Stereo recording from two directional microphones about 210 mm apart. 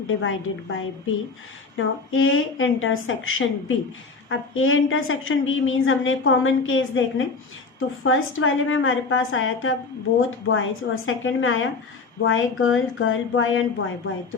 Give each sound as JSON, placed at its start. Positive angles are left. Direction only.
{"t": 0.2, "sound": "a woman's voice", "side_deg": 70}